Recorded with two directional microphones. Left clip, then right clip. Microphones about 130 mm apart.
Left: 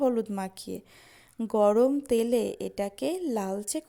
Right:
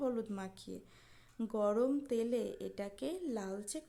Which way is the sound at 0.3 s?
50° left (ahead or behind).